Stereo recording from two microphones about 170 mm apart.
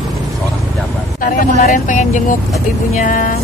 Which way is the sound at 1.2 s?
50° left (ahead or behind).